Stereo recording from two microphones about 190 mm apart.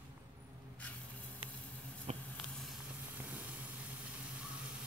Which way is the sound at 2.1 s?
35° right (ahead or behind).